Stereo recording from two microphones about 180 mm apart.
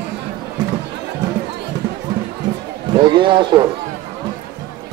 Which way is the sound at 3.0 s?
25° right (ahead or behind).